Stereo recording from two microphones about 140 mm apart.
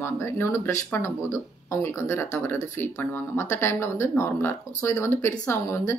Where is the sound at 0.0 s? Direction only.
15° left (ahead or behind).